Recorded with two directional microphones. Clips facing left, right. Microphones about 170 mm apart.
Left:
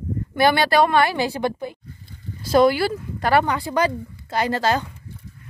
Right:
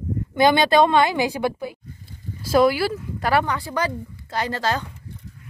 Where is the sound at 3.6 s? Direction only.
15° left (ahead or behind).